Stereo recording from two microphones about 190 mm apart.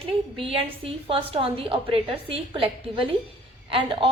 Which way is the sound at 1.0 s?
30° right (ahead or behind).